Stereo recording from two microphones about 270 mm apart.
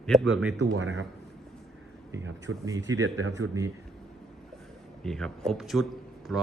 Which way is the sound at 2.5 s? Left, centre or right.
Centre.